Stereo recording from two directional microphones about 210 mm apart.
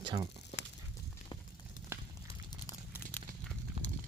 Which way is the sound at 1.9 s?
10° right (ahead or behind).